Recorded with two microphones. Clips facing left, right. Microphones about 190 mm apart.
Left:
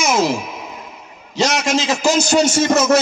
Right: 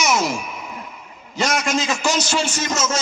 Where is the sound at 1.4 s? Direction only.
85° left.